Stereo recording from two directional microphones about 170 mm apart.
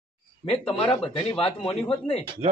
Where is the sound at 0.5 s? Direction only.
35° left (ahead or behind).